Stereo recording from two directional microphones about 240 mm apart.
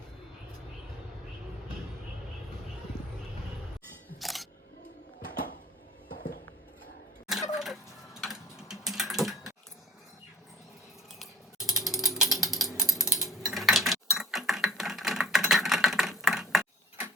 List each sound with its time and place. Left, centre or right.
4.2 s camera: centre
7.5 s typing: centre
11.2 s ratchet: centre
13.1 s mechanisms: centre